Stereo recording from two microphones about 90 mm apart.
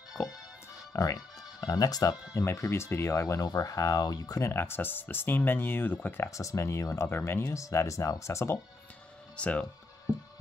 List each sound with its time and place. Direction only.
0.9 s speech: 40° left (ahead or behind)
2.4 s speech: 30° left (ahead or behind)
3.4 s speech: 45° left (ahead or behind)
4.5 s speech: 25° left (ahead or behind)
9.4 s speech: 15° left (ahead or behind)